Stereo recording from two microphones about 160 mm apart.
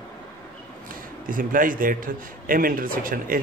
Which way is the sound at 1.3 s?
60° right (ahead or behind).